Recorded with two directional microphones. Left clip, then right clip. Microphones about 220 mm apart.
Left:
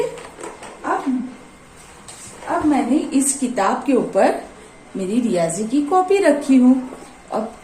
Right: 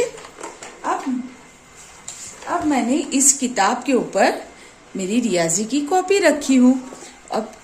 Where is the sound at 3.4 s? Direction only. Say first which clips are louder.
Even; 40° right (ahead or behind).